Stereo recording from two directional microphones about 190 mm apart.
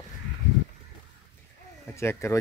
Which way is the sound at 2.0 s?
15° left (ahead or behind).